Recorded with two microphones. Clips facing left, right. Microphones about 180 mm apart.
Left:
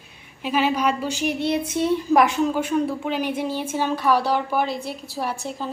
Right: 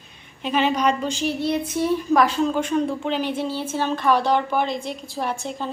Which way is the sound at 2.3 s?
10° left (ahead or behind).